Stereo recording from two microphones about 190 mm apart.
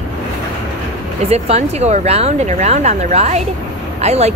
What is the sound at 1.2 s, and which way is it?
Speech, 35° right (ahead or behind).